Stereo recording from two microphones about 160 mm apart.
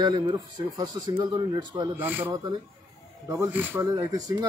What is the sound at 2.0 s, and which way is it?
Speech, 10° right (ahead or behind).